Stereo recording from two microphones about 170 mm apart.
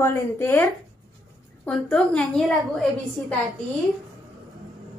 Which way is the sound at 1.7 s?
5° left (ahead or behind).